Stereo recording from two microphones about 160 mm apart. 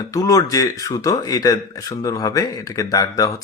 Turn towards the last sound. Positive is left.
turn(degrees=20)  # may be behind; listen again after turning